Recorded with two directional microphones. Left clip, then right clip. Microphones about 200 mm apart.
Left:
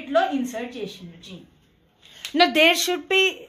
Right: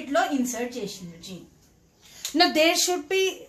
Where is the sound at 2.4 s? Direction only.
40° left (ahead or behind).